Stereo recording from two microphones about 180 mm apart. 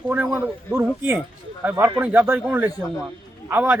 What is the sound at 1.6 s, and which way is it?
A man's voice, 10° right (ahead or behind).